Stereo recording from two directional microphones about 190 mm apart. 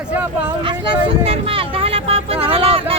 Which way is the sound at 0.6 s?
25° right (ahead or behind).